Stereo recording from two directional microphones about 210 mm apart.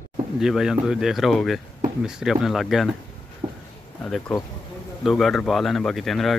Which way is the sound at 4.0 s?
5° left (ahead or behind).